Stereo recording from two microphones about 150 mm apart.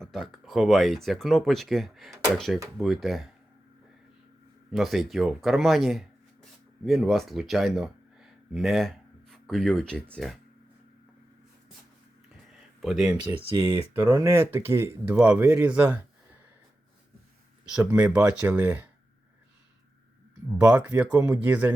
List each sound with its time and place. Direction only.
0.0 s speech: centre (ahead or behind)
4.7 s speech: centre (ahead or behind)
12.5 s a sound: centre (ahead or behind)
13.9 s speech: 20° right (ahead or behind)
17.7 s speech: 10° right (ahead or behind)
20.6 s speech: 10° right (ahead or behind)